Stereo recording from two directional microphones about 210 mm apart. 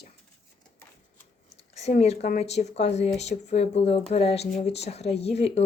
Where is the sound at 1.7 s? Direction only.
30° left (ahead or behind).